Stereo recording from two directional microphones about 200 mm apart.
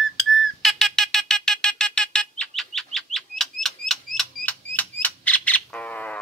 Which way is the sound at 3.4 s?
Centre (ahead or behind).